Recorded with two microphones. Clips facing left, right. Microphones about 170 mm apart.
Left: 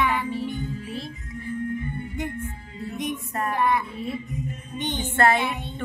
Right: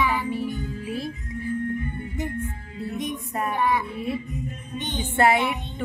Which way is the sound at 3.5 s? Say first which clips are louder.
Left 1 dB; centre (ahead or behind).